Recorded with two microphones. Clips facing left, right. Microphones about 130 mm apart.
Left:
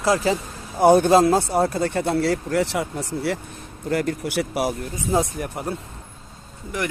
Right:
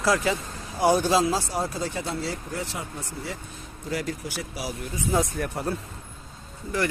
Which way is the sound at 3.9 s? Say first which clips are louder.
Left 7 dB; 55° left (ahead or behind).